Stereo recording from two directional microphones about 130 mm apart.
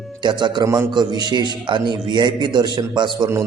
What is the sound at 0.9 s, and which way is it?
A man's voice, 35° right (ahead or behind).